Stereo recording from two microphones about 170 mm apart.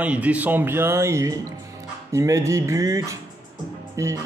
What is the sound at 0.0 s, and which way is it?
A man's voice, 10° right (ahead or behind).